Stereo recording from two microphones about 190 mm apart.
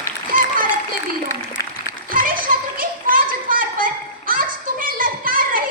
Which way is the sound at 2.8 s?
45° right (ahead or behind).